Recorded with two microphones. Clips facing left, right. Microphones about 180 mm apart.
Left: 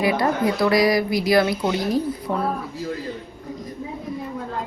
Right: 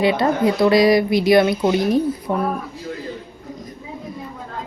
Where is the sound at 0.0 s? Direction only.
25° right (ahead or behind).